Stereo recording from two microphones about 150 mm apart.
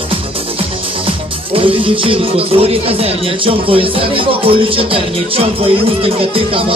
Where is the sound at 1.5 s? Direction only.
35° right (ahead or behind).